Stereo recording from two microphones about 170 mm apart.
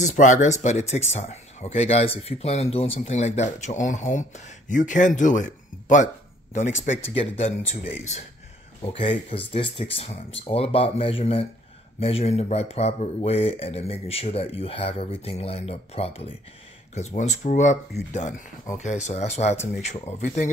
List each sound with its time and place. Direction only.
0.0 s speech: 45° left (ahead or behind)
8.9 s speech: 30° left (ahead or behind)